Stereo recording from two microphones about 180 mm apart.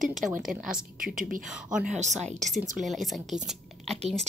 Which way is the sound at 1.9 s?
40° right (ahead or behind).